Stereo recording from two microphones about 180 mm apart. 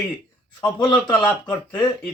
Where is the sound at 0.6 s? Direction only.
25° left (ahead or behind).